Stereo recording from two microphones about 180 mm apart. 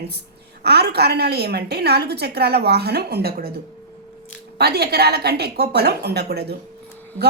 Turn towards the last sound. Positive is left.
turn(degrees=-65)  # may be behind; listen again after turning